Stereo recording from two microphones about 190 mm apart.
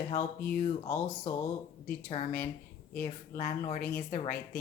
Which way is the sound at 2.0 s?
35° left (ahead or behind).